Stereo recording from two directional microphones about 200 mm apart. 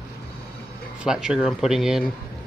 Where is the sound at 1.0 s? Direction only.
5° right (ahead or behind).